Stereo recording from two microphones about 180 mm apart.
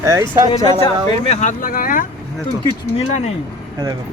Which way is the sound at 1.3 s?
40° left (ahead or behind).